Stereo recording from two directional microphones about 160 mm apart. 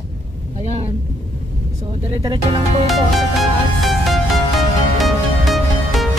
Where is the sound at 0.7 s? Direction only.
40° right (ahead or behind).